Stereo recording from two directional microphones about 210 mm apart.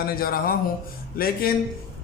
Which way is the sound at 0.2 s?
45° left (ahead or behind).